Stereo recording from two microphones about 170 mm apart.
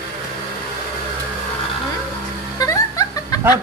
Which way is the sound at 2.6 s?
20° left (ahead or behind).